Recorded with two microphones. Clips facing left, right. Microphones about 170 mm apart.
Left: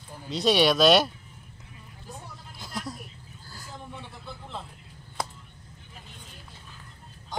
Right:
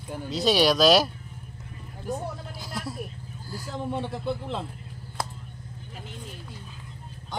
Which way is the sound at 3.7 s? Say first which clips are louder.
Right 12 dB; 80° right.